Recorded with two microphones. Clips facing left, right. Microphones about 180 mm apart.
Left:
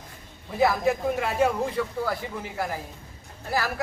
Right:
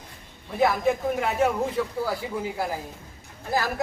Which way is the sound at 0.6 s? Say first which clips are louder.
Even; centre (ahead or behind).